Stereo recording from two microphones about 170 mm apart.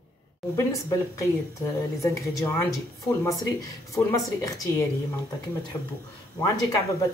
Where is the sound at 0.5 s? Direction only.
15° left (ahead or behind).